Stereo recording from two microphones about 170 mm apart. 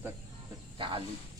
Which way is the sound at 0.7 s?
30° right (ahead or behind).